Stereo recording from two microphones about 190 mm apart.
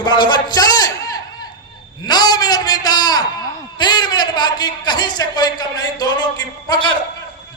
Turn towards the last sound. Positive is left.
turn(degrees=20)  # may be behind; listen again after turning